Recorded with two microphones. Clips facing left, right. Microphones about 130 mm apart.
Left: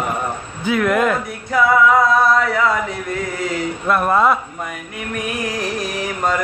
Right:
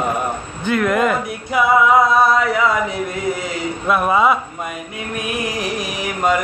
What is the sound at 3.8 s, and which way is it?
Speech, 5° right (ahead or behind).